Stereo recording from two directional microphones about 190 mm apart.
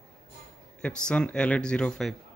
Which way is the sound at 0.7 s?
5° left (ahead or behind).